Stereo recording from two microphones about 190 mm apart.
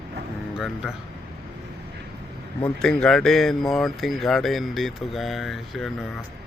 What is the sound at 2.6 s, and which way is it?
Speech, 5° left (ahead or behind).